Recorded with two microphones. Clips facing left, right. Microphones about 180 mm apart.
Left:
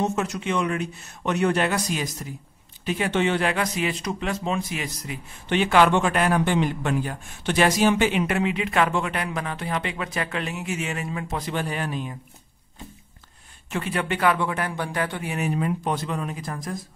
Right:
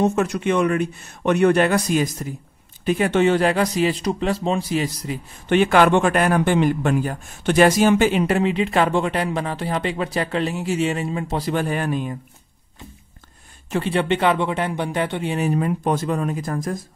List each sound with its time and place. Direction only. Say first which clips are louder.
0.0 s a man's voice: right 6 dB; 55° right (ahead or behind); by 5.2 s 35° right (ahead or behind)
5.5 s a man's voice: right 4 dB; 50° right (ahead or behind)
13.7 s a man's voice: right 6 dB; 30° right (ahead or behind); by 16.7 s 45° right (ahead or behind)